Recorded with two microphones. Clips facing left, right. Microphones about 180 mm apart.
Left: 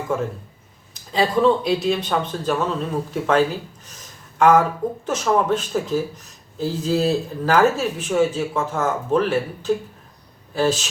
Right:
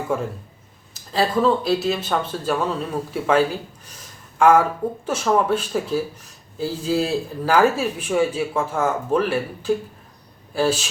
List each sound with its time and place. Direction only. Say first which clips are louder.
1.1 s speech: left 1 dB; 5° right (ahead or behind)